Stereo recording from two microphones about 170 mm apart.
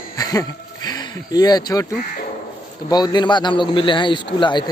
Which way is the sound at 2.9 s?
25° left (ahead or behind).